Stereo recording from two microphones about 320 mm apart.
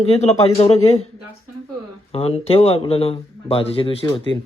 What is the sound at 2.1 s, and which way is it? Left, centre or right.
Speech, centre.